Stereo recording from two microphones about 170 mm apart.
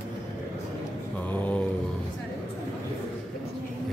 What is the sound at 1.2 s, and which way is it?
Mantra, 10° left (ahead or behind).